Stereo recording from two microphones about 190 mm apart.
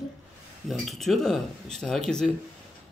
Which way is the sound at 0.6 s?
Centre (ahead or behind).